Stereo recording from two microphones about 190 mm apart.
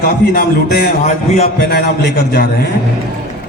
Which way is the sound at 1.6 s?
55° left (ahead or behind).